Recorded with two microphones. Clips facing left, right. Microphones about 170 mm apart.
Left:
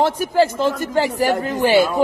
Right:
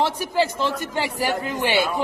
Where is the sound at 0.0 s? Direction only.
50° left (ahead or behind).